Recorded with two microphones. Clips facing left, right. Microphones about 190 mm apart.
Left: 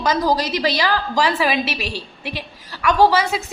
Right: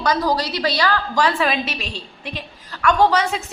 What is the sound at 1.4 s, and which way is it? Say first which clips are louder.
Speech: left 1 dB; 5° left (ahead or behind).